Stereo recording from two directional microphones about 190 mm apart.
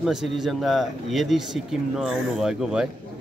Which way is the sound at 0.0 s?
Centre (ahead or behind).